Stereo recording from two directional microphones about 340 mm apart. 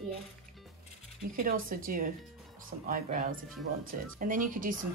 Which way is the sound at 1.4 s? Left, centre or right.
Right.